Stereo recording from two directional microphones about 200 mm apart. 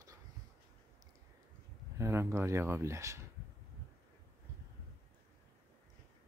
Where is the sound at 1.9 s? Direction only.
15° right (ahead or behind).